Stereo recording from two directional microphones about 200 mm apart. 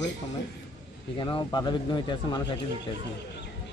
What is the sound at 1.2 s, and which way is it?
Speech, 20° left (ahead or behind).